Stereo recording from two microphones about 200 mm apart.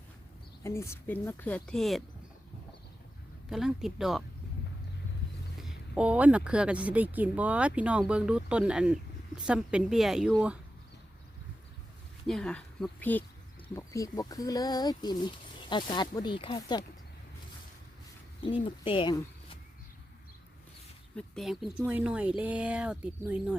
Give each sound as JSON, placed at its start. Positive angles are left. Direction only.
{"t": 0.6, "sound": "a woman's voice", "side_deg": 15}
{"t": 3.5, "sound": "speech", "side_deg": -5}
{"t": 5.5, "sound": "speech", "side_deg": 0}
{"t": 12.2, "sound": "speech", "side_deg": 0}
{"t": 18.6, "sound": "speech", "side_deg": 25}
{"t": 21.2, "sound": "speech", "side_deg": 0}